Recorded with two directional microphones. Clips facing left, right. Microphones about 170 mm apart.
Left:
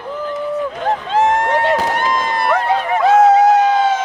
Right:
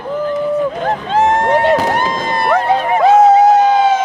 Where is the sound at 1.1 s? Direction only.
35° right (ahead or behind).